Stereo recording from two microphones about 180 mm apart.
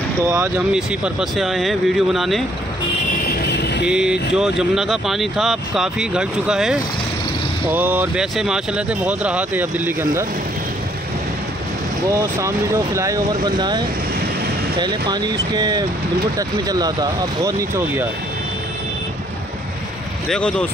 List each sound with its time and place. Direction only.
0.2 s speech: 15° right (ahead or behind)
0.7 s speech: centre (ahead or behind)
3.3 s vehicle: 65° left (ahead or behind)
3.8 s speech: 5° right (ahead or behind)
12.1 s speech: 15° right (ahead or behind)
20.2 s speech: 5° left (ahead or behind)